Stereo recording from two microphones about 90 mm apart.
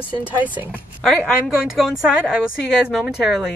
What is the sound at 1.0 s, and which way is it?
Speech, 10° left (ahead or behind).